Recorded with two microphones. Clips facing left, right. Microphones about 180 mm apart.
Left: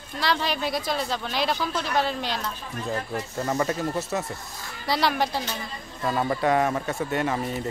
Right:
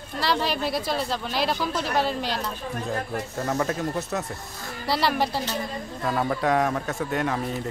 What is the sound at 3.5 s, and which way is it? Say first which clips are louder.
A man's voice: even; centre (ahead or behind).